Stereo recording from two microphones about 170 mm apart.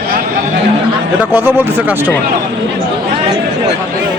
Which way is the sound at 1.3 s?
10° right (ahead or behind).